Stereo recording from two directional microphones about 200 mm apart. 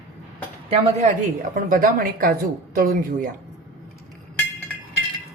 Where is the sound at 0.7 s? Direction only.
40° right (ahead or behind).